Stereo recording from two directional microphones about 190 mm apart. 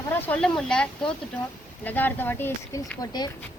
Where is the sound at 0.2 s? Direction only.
5° left (ahead or behind).